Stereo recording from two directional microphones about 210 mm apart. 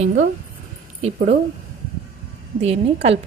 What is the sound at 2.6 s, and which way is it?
Speech, 30° right (ahead or behind).